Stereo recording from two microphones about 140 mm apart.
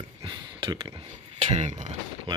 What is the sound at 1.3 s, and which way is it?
Speech, 55° right (ahead or behind).